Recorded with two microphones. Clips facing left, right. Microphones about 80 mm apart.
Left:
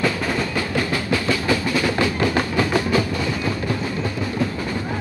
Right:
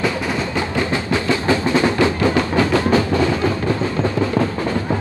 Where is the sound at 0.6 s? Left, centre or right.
Right.